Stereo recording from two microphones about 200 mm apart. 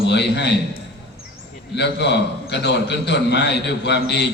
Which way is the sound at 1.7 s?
55° left (ahead or behind).